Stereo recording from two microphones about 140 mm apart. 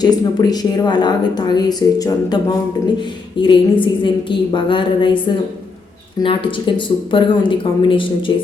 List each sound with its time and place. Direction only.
0.0 s a woman's voice: 30° left (ahead or behind)
6.1 s speech: 35° left (ahead or behind)